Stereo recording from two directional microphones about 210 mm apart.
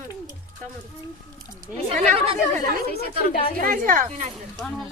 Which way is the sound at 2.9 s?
40° left (ahead or behind).